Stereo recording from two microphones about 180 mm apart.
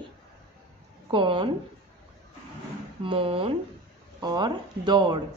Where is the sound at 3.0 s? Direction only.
30° right (ahead or behind).